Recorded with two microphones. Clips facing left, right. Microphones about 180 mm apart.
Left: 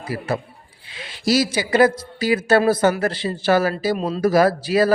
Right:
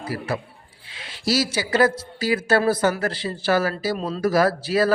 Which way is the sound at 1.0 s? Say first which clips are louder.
Left 4 dB; 15° left (ahead or behind).